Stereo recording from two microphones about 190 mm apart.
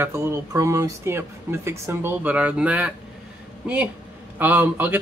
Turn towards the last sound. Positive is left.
turn(degrees=-10)  # may be behind; listen again after turning